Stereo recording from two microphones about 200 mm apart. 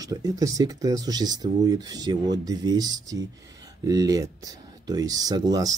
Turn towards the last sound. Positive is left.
turn(degrees=-20)  # may be behind; listen again after turning